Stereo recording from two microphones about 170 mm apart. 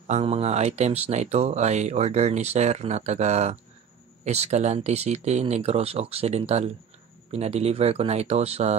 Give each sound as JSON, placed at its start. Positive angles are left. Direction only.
{"t": 0.0, "sound": "speech", "side_deg": -40}